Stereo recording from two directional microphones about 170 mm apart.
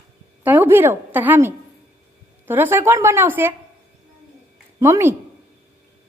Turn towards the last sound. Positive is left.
turn(degrees=-15)  # may be behind; listen again after turning